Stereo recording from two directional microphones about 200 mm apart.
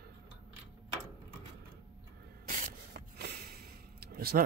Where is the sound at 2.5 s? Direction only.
50° right (ahead or behind).